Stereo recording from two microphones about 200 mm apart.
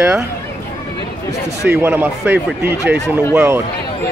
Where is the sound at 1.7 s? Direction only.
10° right (ahead or behind).